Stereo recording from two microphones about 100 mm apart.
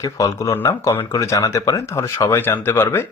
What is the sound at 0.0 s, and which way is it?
Speech, 35° left (ahead or behind).